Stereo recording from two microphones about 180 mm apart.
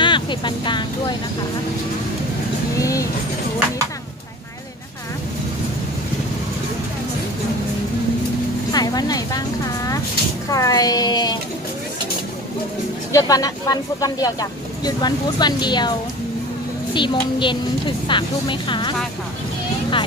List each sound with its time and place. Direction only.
0.0 s speech: 25° left (ahead or behind)
2.8 s speech: 20° left (ahead or behind)
8.7 s vehicle: 20° left (ahead or behind)
10.5 s speech: 20° left (ahead or behind)
13.1 s speech: 20° left (ahead or behind)
16.9 s speech: 25° left (ahead or behind)